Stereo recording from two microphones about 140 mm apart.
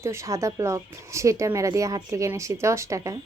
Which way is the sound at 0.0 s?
20° right (ahead or behind).